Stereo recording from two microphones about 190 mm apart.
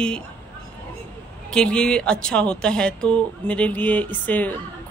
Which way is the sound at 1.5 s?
5° left (ahead or behind).